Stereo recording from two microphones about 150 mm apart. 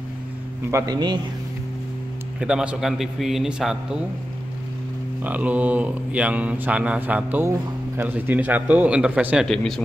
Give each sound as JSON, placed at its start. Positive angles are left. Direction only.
{"t": 0.7, "sound": "a man's voice", "side_deg": -20}
{"t": 2.4, "sound": "a man's voice", "side_deg": -5}
{"t": 5.2, "sound": "speech", "side_deg": -10}
{"t": 9.5, "sound": "a man's voice", "side_deg": 5}